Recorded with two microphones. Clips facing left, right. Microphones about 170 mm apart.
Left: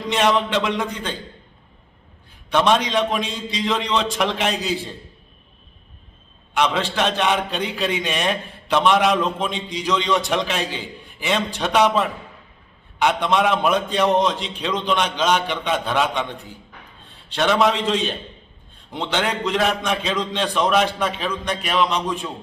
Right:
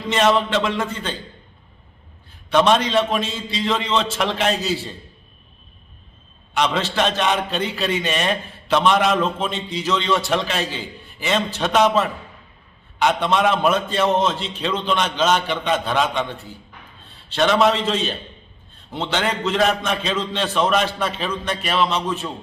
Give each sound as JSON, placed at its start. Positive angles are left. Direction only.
{"t": 0.3, "sound": "a man's voice", "side_deg": 15}
{"t": 2.6, "sound": "a man's voice", "side_deg": 10}
{"t": 6.6, "sound": "a man's voice", "side_deg": 10}
{"t": 13.2, "sound": "a man's voice", "side_deg": 10}